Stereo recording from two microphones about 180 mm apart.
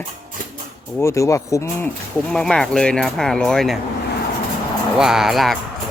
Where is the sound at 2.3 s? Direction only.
5° left (ahead or behind).